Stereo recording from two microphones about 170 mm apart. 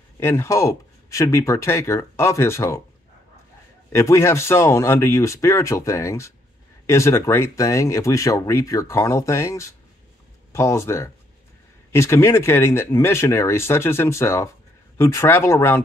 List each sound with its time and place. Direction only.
0.2 s speech: 15° left (ahead or behind)
3.9 s speech: 15° left (ahead or behind)